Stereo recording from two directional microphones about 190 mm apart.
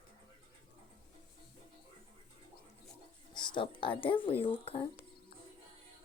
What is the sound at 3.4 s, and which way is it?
Speech, 25° left (ahead or behind).